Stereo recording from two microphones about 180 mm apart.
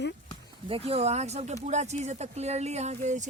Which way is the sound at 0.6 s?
30° right (ahead or behind).